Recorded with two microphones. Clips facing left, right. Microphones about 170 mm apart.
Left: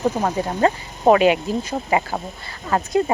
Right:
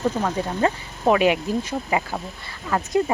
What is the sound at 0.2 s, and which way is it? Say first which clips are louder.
Speech: left 3 dB; 40° left (ahead or behind).